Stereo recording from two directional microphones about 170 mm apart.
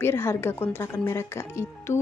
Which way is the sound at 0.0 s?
15° left (ahead or behind).